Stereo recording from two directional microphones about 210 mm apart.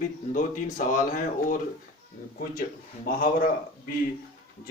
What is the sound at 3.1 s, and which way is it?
Speech, 40° left (ahead or behind).